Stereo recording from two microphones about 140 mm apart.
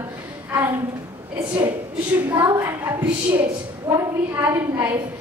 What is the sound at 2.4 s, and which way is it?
A woman's voice, 15° right (ahead or behind).